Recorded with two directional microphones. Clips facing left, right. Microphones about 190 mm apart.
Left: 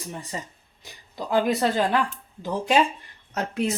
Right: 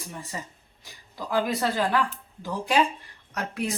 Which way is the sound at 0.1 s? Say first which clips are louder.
Left 3 dB; 20° left (ahead or behind).